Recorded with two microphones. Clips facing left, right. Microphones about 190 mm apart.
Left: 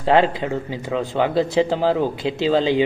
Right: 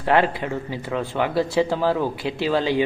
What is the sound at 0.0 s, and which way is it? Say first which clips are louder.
Speech: left 3 dB; 25° left (ahead or behind).